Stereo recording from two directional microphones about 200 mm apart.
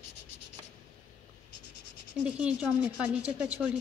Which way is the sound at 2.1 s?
5° right (ahead or behind).